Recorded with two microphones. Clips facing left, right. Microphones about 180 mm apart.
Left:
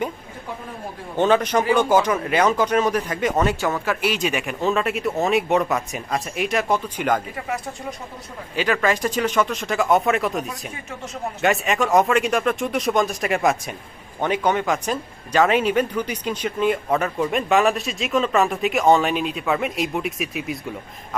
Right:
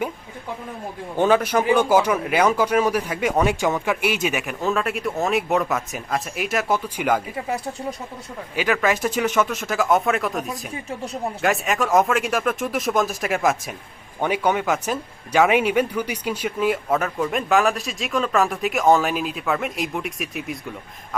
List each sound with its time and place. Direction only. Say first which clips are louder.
1.1 s speech: even; 10° right (ahead or behind)
7.3 s speech: right 2 dB; 30° right (ahead or behind)
8.5 s speech: even; 5° right (ahead or behind)